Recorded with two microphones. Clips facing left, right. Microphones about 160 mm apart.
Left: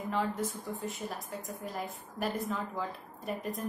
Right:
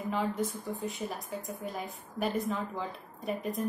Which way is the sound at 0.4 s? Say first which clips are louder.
Right 2 dB; centre (ahead or behind).